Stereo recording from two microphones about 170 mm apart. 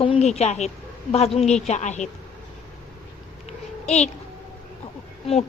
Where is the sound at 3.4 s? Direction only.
40° left (ahead or behind).